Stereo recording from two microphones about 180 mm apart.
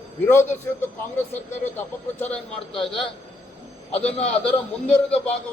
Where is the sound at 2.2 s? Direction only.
10° left (ahead or behind).